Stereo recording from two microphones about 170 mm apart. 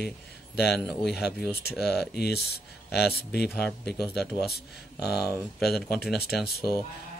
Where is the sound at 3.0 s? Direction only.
70° left (ahead or behind).